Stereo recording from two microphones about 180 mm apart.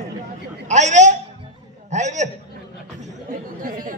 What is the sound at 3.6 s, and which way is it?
Speech, 50° right (ahead or behind).